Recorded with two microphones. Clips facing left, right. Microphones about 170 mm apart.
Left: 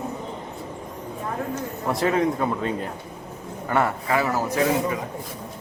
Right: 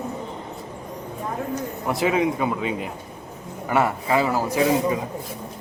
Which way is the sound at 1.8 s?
5° right (ahead or behind).